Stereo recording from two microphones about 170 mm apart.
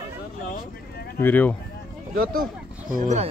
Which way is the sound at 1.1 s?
10° left (ahead or behind).